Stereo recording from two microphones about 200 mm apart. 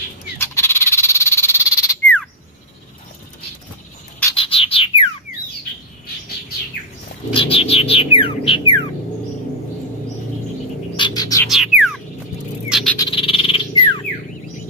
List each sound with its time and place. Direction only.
0.4 s frog: 10° left (ahead or behind)
4.4 s bird: 30° left (ahead or behind)
7.3 s bird: 30° left (ahead or behind)
11.0 s bird: 20° left (ahead or behind)
11.4 s music: centre (ahead or behind)
12.6 s a sound: centre (ahead or behind)
12.9 s bird: 20° left (ahead or behind)